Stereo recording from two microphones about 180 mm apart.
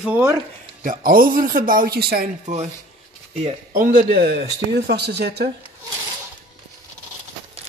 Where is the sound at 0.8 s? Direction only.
50° right (ahead or behind).